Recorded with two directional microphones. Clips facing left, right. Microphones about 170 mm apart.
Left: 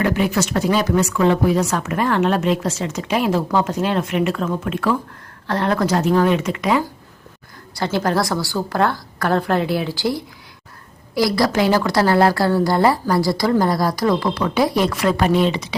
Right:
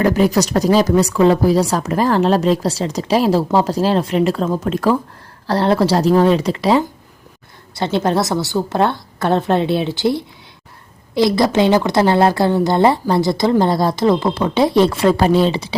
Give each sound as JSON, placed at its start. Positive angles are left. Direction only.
{"t": 0.0, "sound": "a woman's voice", "side_deg": -40}